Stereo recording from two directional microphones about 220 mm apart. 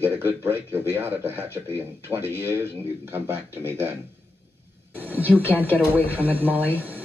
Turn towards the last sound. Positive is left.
turn(degrees=-10)  # may be behind; listen again after turning